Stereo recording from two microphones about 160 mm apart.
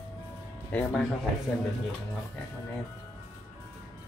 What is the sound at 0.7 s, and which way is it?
Speech, 10° left (ahead or behind).